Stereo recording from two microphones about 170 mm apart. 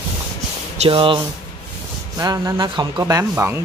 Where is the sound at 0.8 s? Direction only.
30° right (ahead or behind).